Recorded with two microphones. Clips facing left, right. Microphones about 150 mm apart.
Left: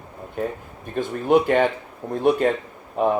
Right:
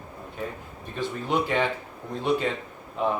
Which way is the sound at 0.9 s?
50° left (ahead or behind).